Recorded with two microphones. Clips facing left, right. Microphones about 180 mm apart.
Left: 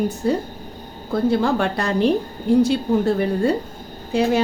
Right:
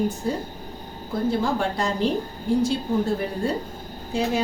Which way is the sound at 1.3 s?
70° left (ahead or behind).